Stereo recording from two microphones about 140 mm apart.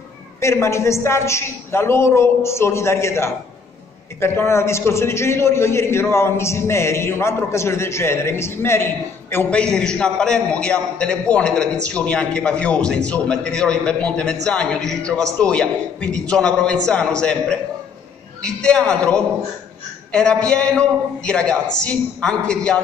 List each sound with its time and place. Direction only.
0.4 s a man's voice: 20° left (ahead or behind)